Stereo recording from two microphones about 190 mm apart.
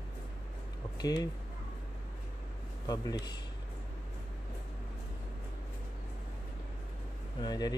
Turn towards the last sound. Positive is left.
turn(degrees=20)  # may be behind; listen again after turning